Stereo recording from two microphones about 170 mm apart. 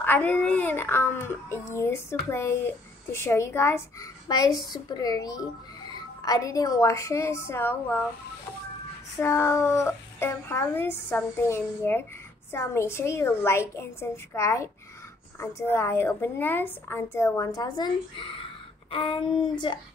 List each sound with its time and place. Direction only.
0.0 s a child's voice: 10° left (ahead or behind)
9.2 s a child's voice: 15° left (ahead or behind)